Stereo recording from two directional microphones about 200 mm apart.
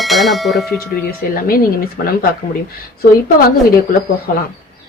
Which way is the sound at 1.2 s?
50° left (ahead or behind).